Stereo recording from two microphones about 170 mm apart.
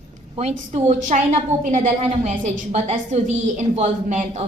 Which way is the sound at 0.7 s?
45° right (ahead or behind).